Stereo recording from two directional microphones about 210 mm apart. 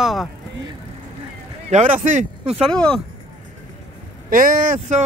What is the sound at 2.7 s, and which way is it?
Speech, 5° left (ahead or behind).